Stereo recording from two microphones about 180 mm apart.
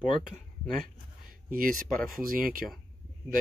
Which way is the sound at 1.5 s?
50° right (ahead or behind).